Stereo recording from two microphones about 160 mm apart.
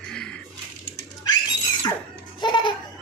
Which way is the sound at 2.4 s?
30° left (ahead or behind).